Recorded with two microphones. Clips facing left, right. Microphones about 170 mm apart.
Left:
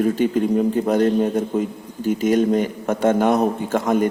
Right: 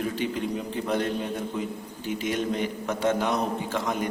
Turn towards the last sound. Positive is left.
turn(degrees=50)  # may be behind; listen again after turning